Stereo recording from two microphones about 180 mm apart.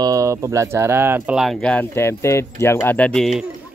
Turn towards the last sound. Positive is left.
turn(degrees=0)  # may be behind; listen again after turning